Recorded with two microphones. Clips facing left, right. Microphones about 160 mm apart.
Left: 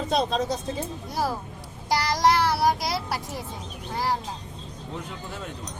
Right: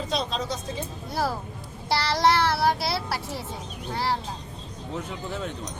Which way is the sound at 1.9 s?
15° left (ahead or behind).